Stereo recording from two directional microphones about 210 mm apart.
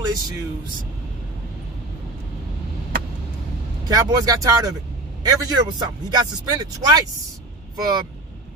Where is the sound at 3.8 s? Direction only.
15° right (ahead or behind).